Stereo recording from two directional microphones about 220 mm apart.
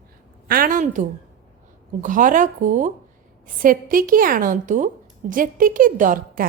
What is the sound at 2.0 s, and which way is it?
A woman's voice, 35° right (ahead or behind).